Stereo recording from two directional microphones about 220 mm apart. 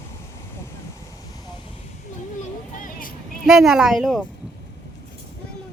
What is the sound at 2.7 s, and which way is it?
Vehicle, 40° left (ahead or behind).